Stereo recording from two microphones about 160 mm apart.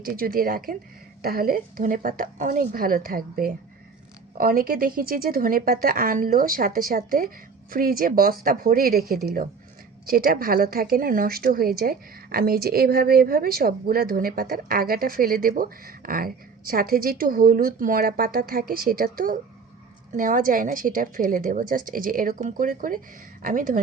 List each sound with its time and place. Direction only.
0.0 s a woman's voice: 65° right (ahead or behind)